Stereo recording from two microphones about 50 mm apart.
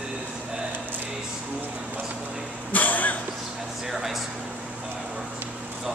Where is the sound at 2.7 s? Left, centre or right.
Left.